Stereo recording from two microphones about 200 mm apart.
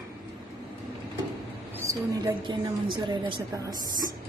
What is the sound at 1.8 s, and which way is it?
A woman's voice, 20° right (ahead or behind).